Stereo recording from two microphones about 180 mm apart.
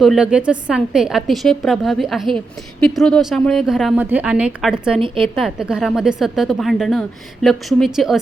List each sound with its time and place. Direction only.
0.0 s a woman's voice: 5° right (ahead or behind)
4.9 s a woman's voice: 30° right (ahead or behind)
5.3 s a woman's voice: centre (ahead or behind)